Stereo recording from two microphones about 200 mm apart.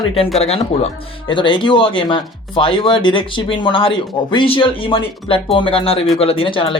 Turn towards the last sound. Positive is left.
turn(degrees=25)  # may be behind; listen again after turning